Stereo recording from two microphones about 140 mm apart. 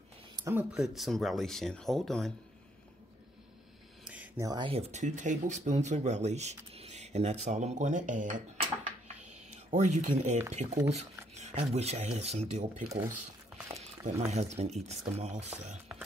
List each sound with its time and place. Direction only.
0.7 s speech: 5° right (ahead or behind)
4.0 s a sound: 10° right (ahead or behind)
4.4 s speech: 25° right (ahead or behind)
4.6 s speech: 45° right (ahead or behind); by 8.4 s 65° right (ahead or behind)
8.5 s a sound: 55° right (ahead or behind)
10.5 s speech: 55° right (ahead or behind)
14.0 s speech: 50° right (ahead or behind)